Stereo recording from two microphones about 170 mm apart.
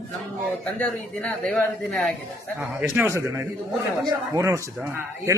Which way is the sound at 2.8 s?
15° right (ahead or behind).